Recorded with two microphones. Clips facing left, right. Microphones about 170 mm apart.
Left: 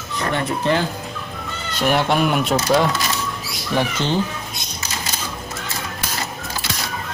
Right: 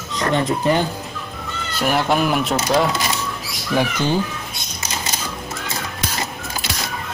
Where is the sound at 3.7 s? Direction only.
10° right (ahead or behind).